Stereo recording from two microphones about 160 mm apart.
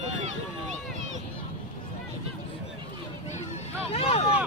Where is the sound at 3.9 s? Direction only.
40° left (ahead or behind).